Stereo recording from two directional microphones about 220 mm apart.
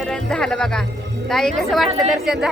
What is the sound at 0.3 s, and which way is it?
A woman's voice, 5° left (ahead or behind).